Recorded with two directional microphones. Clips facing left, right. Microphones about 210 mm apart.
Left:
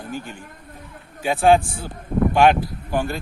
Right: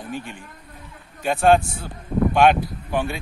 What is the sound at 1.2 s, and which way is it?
Speech, 5° left (ahead or behind).